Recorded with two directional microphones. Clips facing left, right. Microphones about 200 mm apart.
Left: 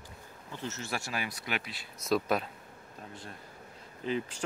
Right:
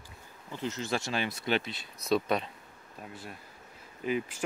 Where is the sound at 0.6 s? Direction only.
20° right (ahead or behind).